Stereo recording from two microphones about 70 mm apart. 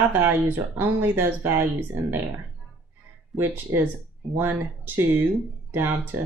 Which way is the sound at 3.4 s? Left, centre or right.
Right.